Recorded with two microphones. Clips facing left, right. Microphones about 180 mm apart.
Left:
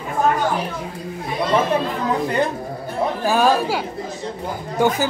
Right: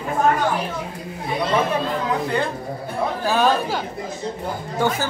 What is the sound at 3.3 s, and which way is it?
Speech, 10° left (ahead or behind).